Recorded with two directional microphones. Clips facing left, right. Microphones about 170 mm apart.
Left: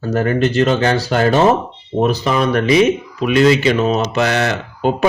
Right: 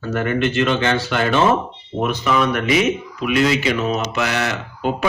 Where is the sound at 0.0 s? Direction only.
35° left (ahead or behind).